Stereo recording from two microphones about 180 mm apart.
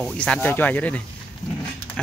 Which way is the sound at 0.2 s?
5° left (ahead or behind).